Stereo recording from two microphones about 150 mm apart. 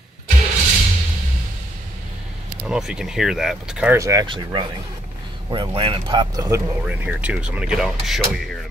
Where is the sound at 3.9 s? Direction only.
20° right (ahead or behind).